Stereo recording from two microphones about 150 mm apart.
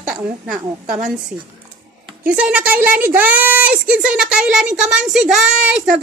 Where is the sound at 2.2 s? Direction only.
10° right (ahead or behind).